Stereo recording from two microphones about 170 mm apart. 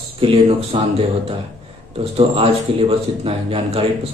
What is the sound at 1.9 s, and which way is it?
A man's voice, 35° right (ahead or behind).